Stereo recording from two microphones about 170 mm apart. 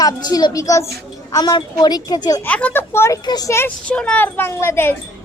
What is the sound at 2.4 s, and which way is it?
A woman's voice, 10° left (ahead or behind).